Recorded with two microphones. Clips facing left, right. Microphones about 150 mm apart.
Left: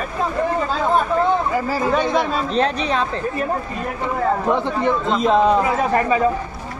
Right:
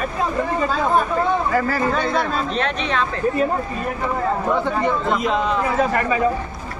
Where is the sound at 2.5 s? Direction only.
35° left (ahead or behind).